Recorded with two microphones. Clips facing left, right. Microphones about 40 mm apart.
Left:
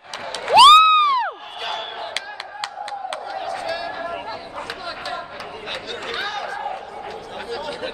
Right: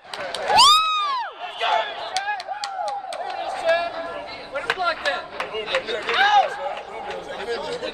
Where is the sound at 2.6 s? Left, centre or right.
Left.